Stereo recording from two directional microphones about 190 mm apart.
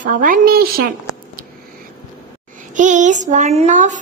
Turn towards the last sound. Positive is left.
turn(degrees=-40)  # may be behind; listen again after turning